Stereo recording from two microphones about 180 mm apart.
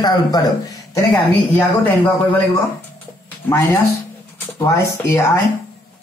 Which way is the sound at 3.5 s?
15° left (ahead or behind).